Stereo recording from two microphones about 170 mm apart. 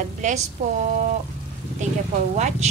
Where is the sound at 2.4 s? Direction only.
45° right (ahead or behind).